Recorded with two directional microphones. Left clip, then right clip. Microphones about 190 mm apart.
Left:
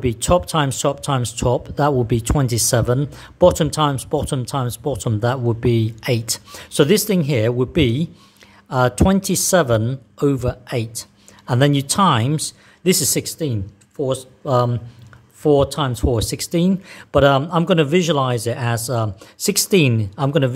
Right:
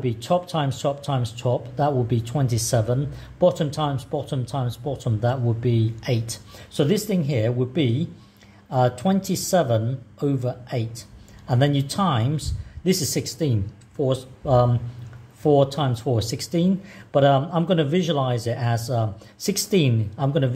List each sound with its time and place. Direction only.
0.0 s speech: 30° left (ahead or behind)